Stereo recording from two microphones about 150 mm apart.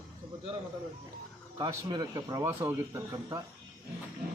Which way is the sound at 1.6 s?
25° right (ahead or behind).